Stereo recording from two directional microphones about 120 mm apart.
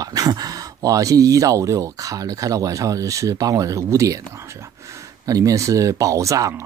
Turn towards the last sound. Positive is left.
turn(degrees=-25)  # may be behind; listen again after turning